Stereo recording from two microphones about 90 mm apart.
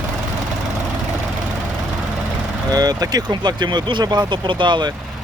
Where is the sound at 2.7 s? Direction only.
45° right (ahead or behind).